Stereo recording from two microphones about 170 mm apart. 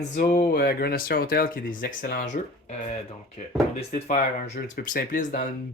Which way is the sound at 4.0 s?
50° left (ahead or behind).